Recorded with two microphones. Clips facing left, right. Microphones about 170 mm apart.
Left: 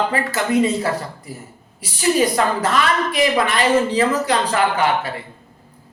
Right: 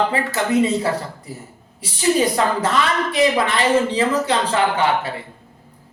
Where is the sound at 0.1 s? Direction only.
25° right (ahead or behind).